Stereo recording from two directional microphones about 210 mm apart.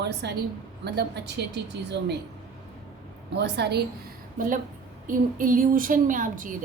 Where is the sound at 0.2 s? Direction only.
55° right (ahead or behind).